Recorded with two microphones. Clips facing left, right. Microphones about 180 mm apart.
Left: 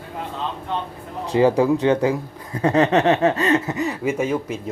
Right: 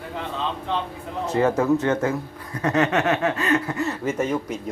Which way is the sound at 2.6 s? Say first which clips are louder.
Left 4 dB; 30° left (ahead or behind).